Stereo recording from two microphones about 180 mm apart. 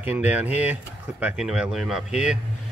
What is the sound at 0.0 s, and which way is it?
Speech, 10° right (ahead or behind).